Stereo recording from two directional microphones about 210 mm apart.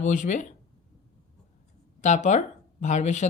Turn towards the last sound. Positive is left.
turn(degrees=35)  # may be behind; listen again after turning